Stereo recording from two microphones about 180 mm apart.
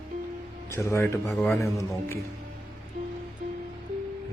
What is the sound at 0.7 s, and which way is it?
Speech, 15° left (ahead or behind).